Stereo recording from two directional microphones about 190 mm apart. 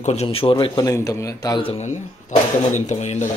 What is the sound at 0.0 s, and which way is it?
A man's voice, 35° left (ahead or behind).